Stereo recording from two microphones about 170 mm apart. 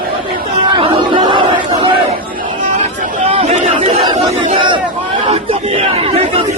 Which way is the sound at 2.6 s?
45° right (ahead or behind).